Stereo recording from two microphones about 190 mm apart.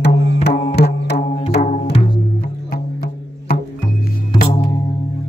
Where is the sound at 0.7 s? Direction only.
60° left (ahead or behind).